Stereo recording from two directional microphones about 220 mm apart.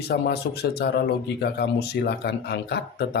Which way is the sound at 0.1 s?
45° left (ahead or behind).